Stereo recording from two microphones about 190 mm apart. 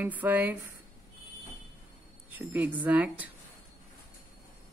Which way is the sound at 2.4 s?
10° right (ahead or behind).